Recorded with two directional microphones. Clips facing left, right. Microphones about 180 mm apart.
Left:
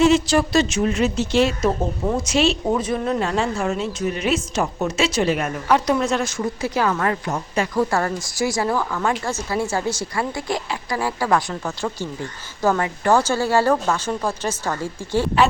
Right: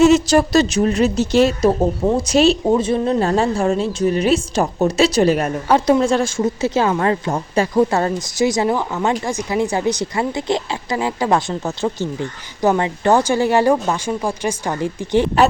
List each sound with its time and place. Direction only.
0.0 s a woman's voice: 45° right (ahead or behind)
7.8 s a woman's voice: 20° right (ahead or behind)